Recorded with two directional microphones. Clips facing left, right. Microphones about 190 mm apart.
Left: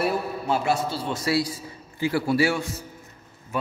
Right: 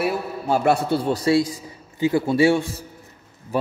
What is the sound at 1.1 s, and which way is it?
A man's voice, 30° right (ahead or behind).